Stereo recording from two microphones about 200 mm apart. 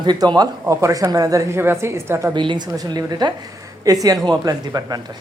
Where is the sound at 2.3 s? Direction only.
25° right (ahead or behind).